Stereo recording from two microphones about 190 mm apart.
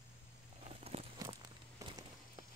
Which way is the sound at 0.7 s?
35° right (ahead or behind).